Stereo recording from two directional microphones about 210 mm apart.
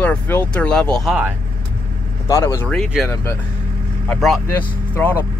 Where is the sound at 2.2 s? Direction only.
15° left (ahead or behind).